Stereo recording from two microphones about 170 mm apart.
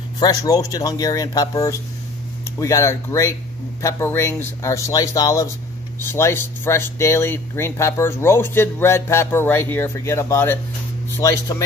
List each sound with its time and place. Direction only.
0.2 s speech: 20° left (ahead or behind)